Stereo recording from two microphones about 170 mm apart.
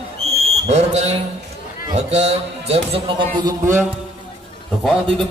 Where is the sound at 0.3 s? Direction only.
40° right (ahead or behind).